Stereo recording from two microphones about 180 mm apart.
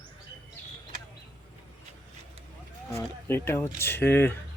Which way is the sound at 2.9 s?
10° left (ahead or behind).